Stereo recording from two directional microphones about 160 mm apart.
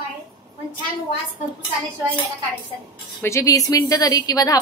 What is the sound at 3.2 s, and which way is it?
A woman's voice, 20° left (ahead or behind).